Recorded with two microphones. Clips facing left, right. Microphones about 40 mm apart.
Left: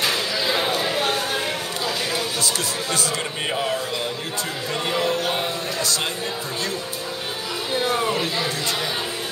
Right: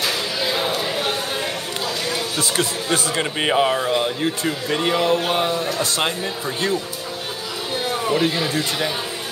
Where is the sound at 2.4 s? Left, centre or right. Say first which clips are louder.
Right 2 dB; right.